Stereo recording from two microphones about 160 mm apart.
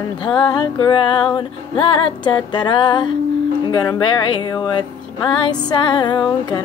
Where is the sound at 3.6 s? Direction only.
25° left (ahead or behind).